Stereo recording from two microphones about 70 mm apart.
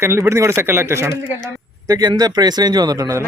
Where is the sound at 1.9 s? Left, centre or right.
Right.